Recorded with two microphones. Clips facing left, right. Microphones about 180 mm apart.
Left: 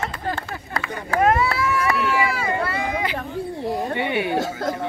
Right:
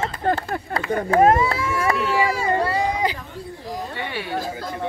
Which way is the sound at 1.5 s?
45° right (ahead or behind).